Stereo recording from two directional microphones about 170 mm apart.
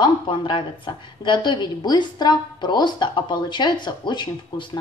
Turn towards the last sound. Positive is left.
turn(degrees=25)  # may be behind; listen again after turning